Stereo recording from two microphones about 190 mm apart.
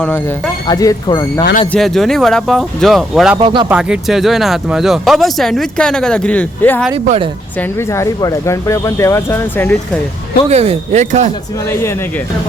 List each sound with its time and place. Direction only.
0.7 s speech: 20° left (ahead or behind)
1.7 s speech: centre (ahead or behind)
3.3 s speech: 25° right (ahead or behind)
3.7 s speech: 5° right (ahead or behind)
10.5 s speech: 35° right (ahead or behind)
11.7 s speech: 15° left (ahead or behind)